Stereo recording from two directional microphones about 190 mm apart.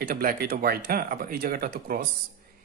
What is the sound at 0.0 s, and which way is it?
Speech, 50° right (ahead or behind).